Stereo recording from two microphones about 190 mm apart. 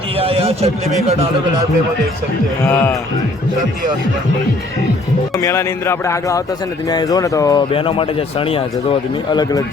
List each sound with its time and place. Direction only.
0.2 s a man's voice: 30° right (ahead or behind)
5.4 s speech: 15° left (ahead or behind)
7.7 s speech: 30° left (ahead or behind)